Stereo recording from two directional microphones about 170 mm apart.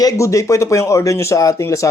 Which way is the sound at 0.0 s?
20° left (ahead or behind).